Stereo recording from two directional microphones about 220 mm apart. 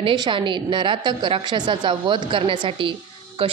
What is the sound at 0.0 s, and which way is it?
A woman's voice, 20° right (ahead or behind).